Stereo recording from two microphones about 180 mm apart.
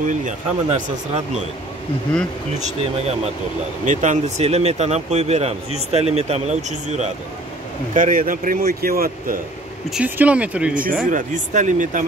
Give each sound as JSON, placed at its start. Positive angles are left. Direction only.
{"t": 0.0, "sound": "speech", "side_deg": -45}
{"t": 3.8, "sound": "speech", "side_deg": -45}
{"t": 9.8, "sound": "speech", "side_deg": -5}
{"t": 10.7, "sound": "speech", "side_deg": -50}